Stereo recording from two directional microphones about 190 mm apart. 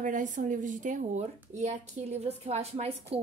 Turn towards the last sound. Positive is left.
turn(degrees=-35)  # may be behind; listen again after turning